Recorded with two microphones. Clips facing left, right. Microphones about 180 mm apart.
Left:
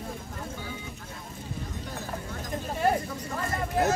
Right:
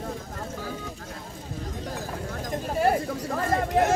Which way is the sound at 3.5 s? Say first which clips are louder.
Right 5 dB; 75° right (ahead or behind).